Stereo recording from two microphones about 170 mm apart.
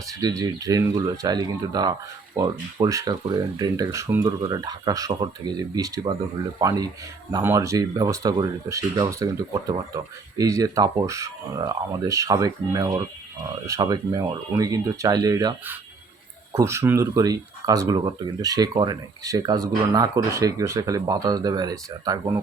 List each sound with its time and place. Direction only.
0.0 s speech: 20° right (ahead or behind)